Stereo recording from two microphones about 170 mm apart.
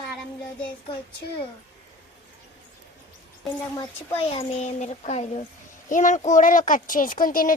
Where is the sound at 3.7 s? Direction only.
35° left (ahead or behind).